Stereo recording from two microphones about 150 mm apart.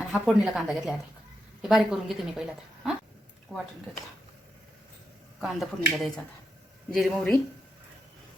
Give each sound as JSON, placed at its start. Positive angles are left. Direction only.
{"t": 0.1, "sound": "a woman's voice", "side_deg": 0}
{"t": 5.4, "sound": "a woman's voice", "side_deg": 0}